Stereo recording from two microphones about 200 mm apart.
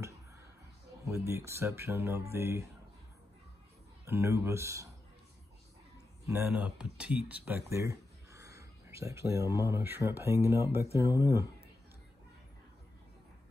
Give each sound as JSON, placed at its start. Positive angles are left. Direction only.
{"t": 1.0, "sound": "speech", "side_deg": -15}
{"t": 4.0, "sound": "speech", "side_deg": -15}
{"t": 6.2, "sound": "speech", "side_deg": -10}